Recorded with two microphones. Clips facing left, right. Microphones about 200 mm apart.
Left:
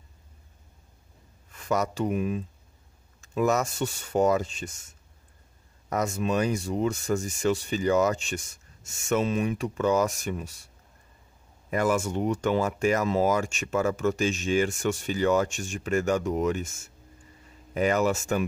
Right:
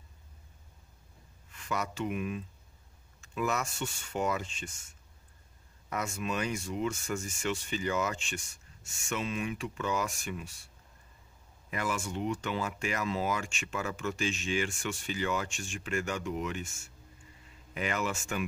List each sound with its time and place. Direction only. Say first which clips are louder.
1.5 s speech: left 8 dB; 45° left (ahead or behind)
5.9 s speech: left 8 dB; 40° left (ahead or behind)
11.7 s speech: left 9 dB; 45° left (ahead or behind)